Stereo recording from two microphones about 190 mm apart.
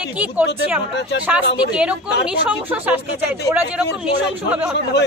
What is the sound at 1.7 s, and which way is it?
A woman's voice, 5° right (ahead or behind).